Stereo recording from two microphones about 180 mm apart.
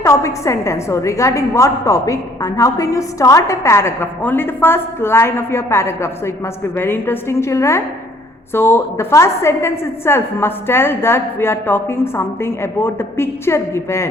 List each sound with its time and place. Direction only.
0.0 s a woman's voice: 15° left (ahead or behind)